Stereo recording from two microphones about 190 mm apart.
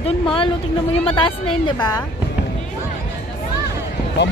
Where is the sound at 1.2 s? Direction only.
25° left (ahead or behind).